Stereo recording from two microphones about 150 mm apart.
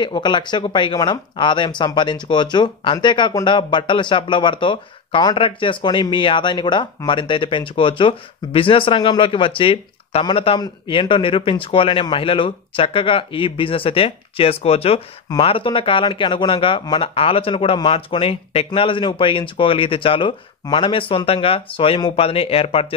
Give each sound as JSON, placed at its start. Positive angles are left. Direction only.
{"t": 0.0, "sound": "speech", "side_deg": 30}